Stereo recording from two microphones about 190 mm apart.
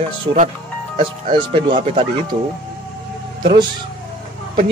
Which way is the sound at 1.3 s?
25° right (ahead or behind).